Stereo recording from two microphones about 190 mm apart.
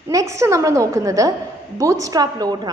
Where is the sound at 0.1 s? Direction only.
15° right (ahead or behind).